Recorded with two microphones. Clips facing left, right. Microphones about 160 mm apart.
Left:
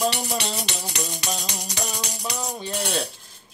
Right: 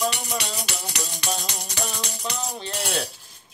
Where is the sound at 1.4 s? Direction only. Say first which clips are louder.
Even; 15° left (ahead or behind).